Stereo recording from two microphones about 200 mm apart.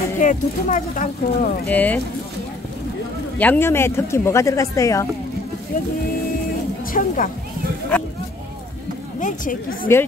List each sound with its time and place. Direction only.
0.2 s speech: 40° left (ahead or behind)
1.7 s speech: 10° left (ahead or behind)
3.3 s speech: 10° left (ahead or behind)
6.9 s speech: 45° left (ahead or behind)
9.2 s a woman's voice: 40° left (ahead or behind)
9.9 s speech: 15° left (ahead or behind)